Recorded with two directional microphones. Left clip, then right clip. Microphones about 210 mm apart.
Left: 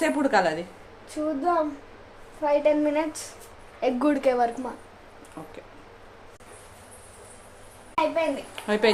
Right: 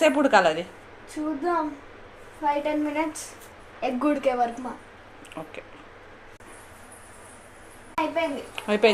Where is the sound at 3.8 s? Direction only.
25° left (ahead or behind).